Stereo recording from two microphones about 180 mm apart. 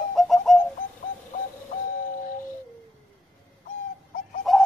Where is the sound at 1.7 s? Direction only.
40° left (ahead or behind).